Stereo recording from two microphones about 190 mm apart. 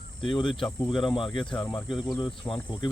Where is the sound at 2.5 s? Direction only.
10° left (ahead or behind).